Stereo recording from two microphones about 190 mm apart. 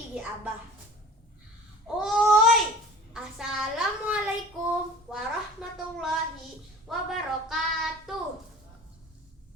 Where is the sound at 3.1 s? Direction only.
5° right (ahead or behind).